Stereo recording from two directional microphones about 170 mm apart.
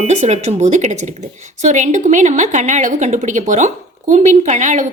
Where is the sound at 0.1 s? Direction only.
40° right (ahead or behind).